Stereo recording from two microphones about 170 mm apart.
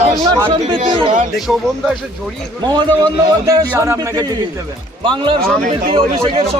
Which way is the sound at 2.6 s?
25° right (ahead or behind).